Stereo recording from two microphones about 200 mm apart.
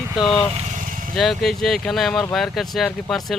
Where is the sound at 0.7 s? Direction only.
40° right (ahead or behind).